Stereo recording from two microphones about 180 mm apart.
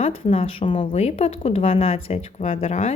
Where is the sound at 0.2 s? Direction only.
30° left (ahead or behind).